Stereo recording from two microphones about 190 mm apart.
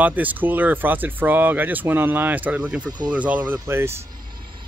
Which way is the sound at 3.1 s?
5° right (ahead or behind).